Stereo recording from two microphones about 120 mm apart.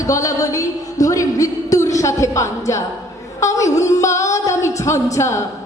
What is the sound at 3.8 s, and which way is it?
Music, 25° left (ahead or behind).